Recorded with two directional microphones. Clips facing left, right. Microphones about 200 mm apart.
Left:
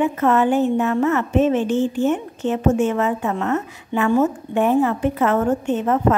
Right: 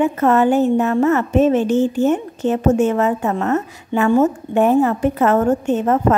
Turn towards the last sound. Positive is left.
turn(degrees=-40)  # may be behind; listen again after turning